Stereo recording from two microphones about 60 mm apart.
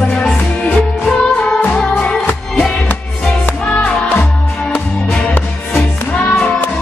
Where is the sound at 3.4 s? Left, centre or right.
Centre.